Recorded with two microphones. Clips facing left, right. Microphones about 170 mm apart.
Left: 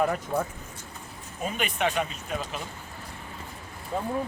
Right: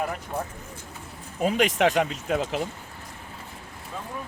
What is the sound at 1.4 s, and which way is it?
Speech, 85° right.